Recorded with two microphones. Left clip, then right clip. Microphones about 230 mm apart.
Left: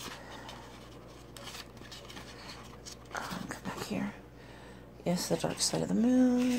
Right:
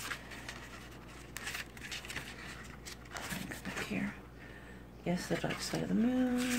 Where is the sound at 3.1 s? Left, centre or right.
Centre.